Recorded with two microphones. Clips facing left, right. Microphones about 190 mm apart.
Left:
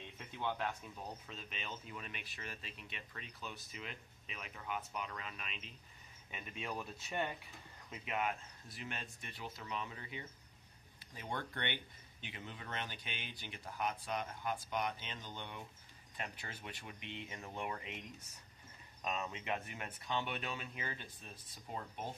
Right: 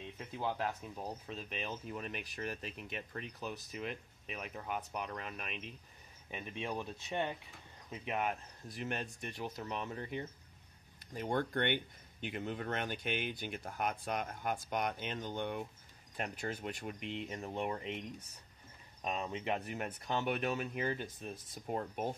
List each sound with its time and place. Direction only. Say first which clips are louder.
0.3 s speech: right 2 dB; 35° right (ahead or behind)
7.1 s speech: right 3 dB; centre (ahead or behind)
7.9 s speech: right 3 dB; 40° right (ahead or behind)
19.0 s speech: right 3 dB; 30° right (ahead or behind); by 22.0 s 55° right (ahead or behind)